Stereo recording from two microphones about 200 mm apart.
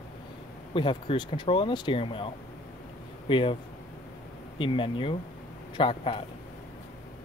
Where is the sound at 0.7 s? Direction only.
25° left (ahead or behind).